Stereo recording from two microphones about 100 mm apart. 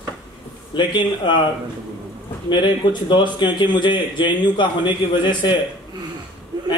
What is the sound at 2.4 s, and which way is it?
A man's voice, 50° left (ahead or behind).